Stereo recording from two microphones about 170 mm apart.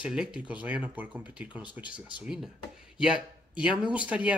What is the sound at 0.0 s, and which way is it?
Speech, 5° right (ahead or behind).